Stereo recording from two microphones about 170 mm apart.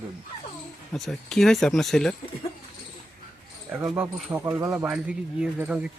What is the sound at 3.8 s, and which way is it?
Speech, 10° right (ahead or behind).